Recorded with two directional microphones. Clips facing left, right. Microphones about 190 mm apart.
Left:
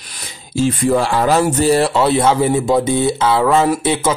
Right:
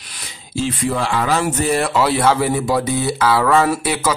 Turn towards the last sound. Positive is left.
turn(degrees=25)  # may be behind; listen again after turning